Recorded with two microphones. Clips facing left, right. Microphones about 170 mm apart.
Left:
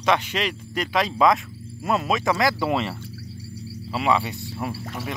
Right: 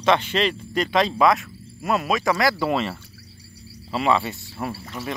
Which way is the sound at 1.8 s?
25° left (ahead or behind).